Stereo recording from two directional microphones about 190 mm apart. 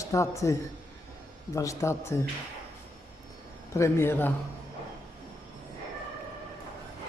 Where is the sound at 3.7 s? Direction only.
15° left (ahead or behind).